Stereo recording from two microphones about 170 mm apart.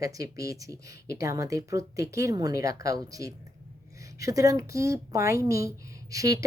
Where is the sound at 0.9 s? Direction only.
70° left (ahead or behind).